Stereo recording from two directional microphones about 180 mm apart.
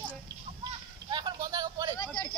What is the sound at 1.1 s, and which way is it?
Vehicle, 25° right (ahead or behind).